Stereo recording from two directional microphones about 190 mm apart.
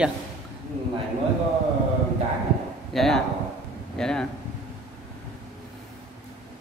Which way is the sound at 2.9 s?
Centre (ahead or behind).